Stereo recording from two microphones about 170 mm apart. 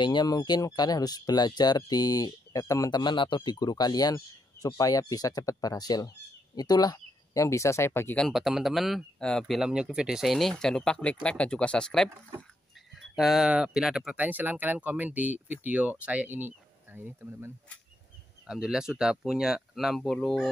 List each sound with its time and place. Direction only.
0.0 s speech: 25° left (ahead or behind)
8.3 s speech: centre (ahead or behind)
13.1 s speech: centre (ahead or behind)
18.5 s speech: 5° right (ahead or behind)